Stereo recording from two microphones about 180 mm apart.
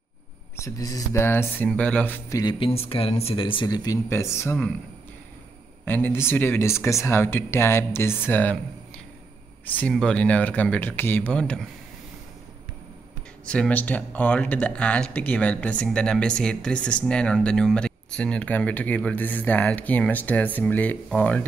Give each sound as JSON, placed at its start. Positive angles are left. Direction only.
{"t": 0.6, "sound": "speech", "side_deg": 20}
{"t": 2.6, "sound": "speech", "side_deg": 30}
{"t": 5.9, "sound": "speech", "side_deg": 10}
{"t": 13.5, "sound": "speech", "side_deg": 5}